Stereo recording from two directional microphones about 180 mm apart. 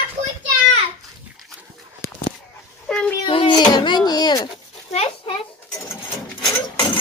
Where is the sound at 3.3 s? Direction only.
25° left (ahead or behind).